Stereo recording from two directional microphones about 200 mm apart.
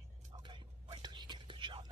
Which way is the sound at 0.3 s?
25° right (ahead or behind).